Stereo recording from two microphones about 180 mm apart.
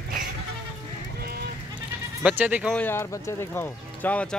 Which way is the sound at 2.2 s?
10° right (ahead or behind).